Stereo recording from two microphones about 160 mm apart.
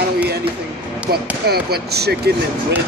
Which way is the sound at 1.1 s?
85° right.